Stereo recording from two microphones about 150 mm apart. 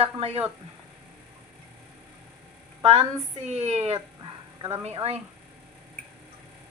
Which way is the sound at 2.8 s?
45° right (ahead or behind).